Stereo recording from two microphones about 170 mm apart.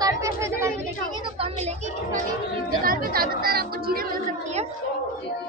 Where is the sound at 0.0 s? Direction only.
20° right (ahead or behind).